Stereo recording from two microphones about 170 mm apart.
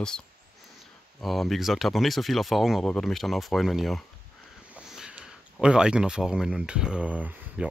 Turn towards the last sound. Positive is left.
turn(degrees=-10)  # may be behind; listen again after turning